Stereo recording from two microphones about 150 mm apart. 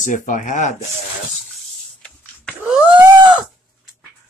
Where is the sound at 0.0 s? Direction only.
60° left (ahead or behind).